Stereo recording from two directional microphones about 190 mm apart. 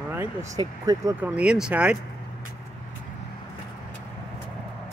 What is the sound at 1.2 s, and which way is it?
Speech, 5° right (ahead or behind).